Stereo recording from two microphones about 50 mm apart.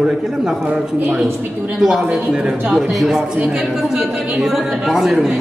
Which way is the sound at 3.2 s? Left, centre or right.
Centre.